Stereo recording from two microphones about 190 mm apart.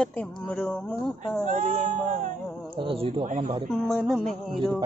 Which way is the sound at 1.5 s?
40° right (ahead or behind).